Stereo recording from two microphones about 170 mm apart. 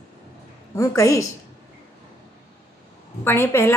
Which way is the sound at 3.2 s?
15° left (ahead or behind).